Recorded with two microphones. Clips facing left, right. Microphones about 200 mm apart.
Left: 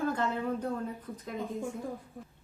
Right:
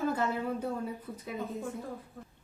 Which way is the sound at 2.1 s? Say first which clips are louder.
Left 2 dB; 15° left (ahead or behind).